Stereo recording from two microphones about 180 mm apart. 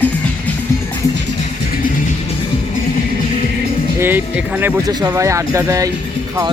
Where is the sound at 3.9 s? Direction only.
10° right (ahead or behind).